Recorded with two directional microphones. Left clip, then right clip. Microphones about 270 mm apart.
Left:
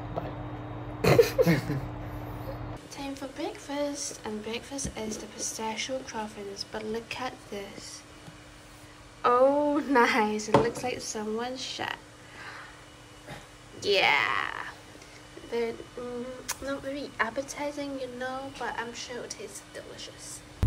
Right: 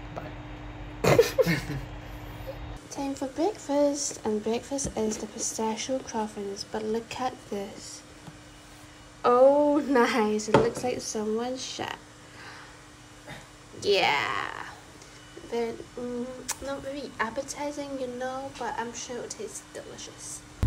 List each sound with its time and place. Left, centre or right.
1.0 s a sound: centre
2.9 s speech: centre
9.2 s speech: centre
13.7 s speech: centre
16.4 s speech: centre